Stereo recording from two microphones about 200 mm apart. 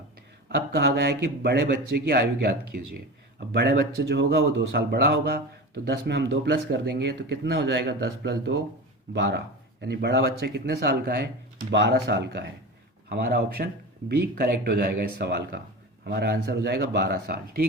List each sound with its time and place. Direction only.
0.4 s a man's voice: 55° right (ahead or behind)